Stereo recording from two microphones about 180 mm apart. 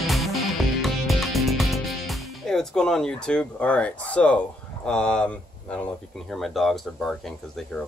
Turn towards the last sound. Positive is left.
turn(degrees=0)  # may be behind; listen again after turning